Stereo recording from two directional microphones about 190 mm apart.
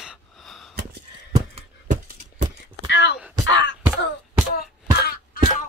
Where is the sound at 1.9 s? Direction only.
45° right (ahead or behind).